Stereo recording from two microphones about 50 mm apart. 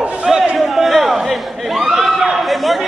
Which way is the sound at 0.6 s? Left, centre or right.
Centre.